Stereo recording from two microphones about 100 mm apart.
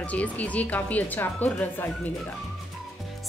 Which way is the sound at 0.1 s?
15° left (ahead or behind).